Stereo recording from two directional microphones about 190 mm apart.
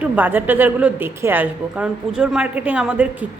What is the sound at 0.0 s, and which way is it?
A woman's voice, 10° right (ahead or behind).